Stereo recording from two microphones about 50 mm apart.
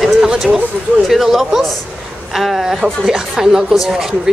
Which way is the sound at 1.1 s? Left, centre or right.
Centre.